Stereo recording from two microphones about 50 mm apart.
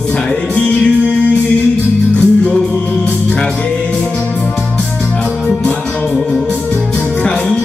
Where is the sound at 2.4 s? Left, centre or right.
Left.